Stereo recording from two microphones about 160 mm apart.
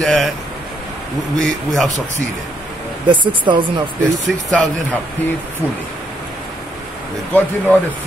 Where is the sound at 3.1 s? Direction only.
30° right (ahead or behind).